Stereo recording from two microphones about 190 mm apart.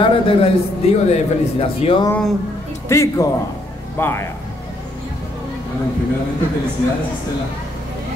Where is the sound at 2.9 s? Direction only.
15° left (ahead or behind).